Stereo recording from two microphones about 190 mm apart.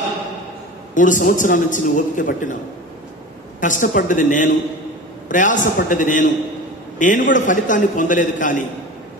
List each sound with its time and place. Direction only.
0.9 s a man's voice: 40° left (ahead or behind)
3.6 s a man's voice: 45° left (ahead or behind)